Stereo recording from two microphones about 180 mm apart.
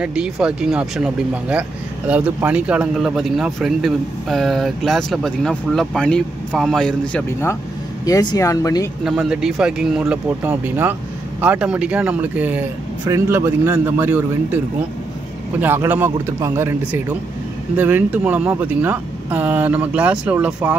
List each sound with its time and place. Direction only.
0.0 s speech: 5° right (ahead or behind); by 8.8 s 20° left (ahead or behind)
9.0 s a man's voice: 5° right (ahead or behind)
15.6 s a man's voice: 10° right (ahead or behind)